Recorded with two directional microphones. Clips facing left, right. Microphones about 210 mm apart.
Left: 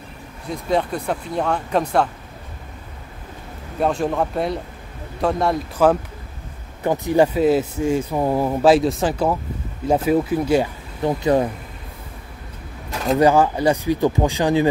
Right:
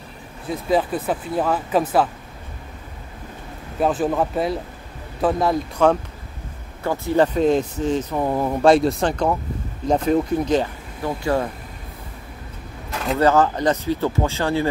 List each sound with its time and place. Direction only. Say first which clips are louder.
0.5 s speech: right 1 dB; 5° right (ahead or behind)
3.8 s speech: even; 5° right (ahead or behind)
6.8 s speech: left 2 dB; 15° left (ahead or behind)
11.0 s speech: left 4 dB; 20° left (ahead or behind)
13.2 s speech: left 1 dB; 10° left (ahead or behind)